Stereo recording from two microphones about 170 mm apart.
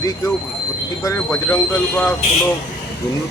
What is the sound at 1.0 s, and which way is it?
A man's voice, 15° left (ahead or behind).